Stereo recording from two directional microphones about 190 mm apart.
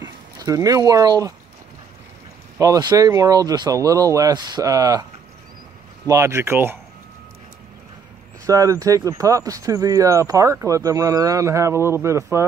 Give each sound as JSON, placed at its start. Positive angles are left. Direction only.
{"t": 0.0, "sound": "speech", "side_deg": -20}
{"t": 2.6, "sound": "speech", "side_deg": -20}
{"t": 6.0, "sound": "speech", "side_deg": -15}
{"t": 8.5, "sound": "speech", "side_deg": -15}